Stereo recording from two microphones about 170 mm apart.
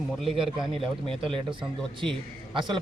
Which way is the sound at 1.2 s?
30° right (ahead or behind).